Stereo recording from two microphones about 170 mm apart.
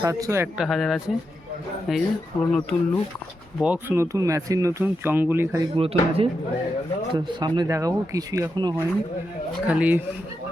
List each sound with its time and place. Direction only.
0.0 s speech: 20° right (ahead or behind)
0.5 s speech: centre (ahead or behind)
3.6 s speech: 10° right (ahead or behind)
5.7 s speech: 35° right (ahead or behind)
9.6 s speech: 10° right (ahead or behind)